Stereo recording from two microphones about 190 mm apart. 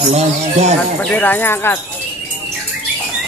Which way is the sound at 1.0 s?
10° left (ahead or behind).